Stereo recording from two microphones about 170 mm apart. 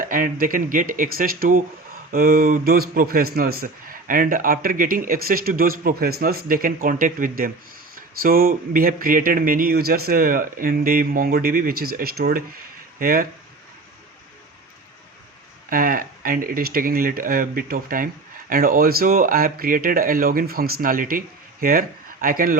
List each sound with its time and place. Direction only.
0.0 s speech: 55° right (ahead or behind)
15.7 s speech: 55° right (ahead or behind)